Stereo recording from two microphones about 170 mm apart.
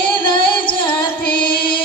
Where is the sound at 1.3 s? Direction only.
30° left (ahead or behind).